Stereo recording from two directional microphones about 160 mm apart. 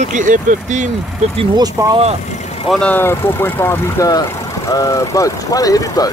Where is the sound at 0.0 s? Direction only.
50° right (ahead or behind).